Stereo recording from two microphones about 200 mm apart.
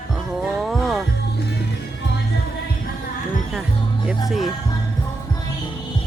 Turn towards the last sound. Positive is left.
turn(degrees=0)  # may be behind; listen again after turning